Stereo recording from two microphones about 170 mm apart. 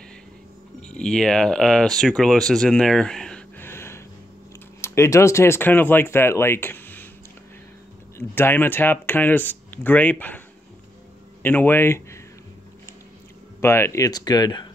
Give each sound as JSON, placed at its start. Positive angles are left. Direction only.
{"t": 0.8, "sound": "speech", "side_deg": 5}
{"t": 8.2, "sound": "speech", "side_deg": 15}
{"t": 11.4, "sound": "speech", "side_deg": 10}
{"t": 13.6, "sound": "speech", "side_deg": 15}